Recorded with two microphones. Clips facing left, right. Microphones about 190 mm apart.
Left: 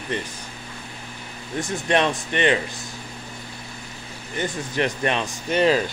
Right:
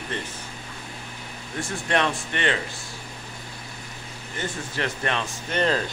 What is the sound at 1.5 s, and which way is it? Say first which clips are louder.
Speech: left 4 dB; 20° left (ahead or behind).